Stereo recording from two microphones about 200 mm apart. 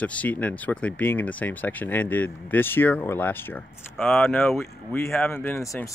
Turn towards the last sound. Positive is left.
turn(degrees=15)  # may be behind; listen again after turning